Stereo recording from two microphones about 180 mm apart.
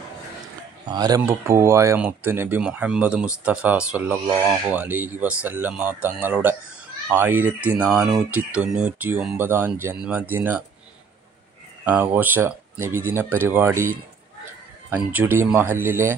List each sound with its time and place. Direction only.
0.8 s speech: 20° right (ahead or behind)
11.8 s speech: 10° right (ahead or behind)
14.9 s speech: 10° right (ahead or behind)